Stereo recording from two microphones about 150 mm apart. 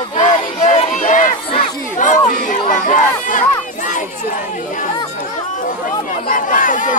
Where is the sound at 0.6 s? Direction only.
50° left (ahead or behind).